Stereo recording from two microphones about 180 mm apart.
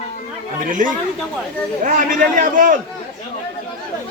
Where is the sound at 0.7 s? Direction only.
45° right (ahead or behind).